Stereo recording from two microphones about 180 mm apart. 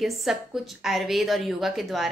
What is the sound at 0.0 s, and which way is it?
A woman's voice, centre (ahead or behind).